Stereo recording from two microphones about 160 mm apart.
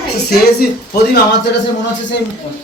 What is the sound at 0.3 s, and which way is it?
Speech, 80° left.